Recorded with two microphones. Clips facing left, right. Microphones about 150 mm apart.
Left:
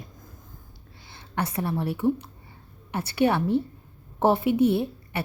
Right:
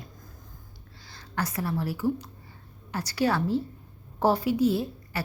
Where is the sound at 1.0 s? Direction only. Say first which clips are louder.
Left 2 dB; 25° left (ahead or behind).